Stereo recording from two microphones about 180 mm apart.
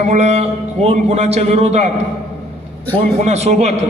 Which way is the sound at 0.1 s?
35° right (ahead or behind).